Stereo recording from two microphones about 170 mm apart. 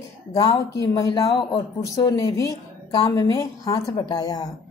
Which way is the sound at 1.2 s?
30° left (ahead or behind).